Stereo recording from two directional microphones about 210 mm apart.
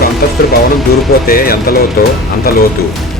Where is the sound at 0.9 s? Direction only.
45° left (ahead or behind).